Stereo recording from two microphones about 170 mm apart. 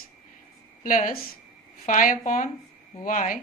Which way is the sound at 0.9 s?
50° left (ahead or behind).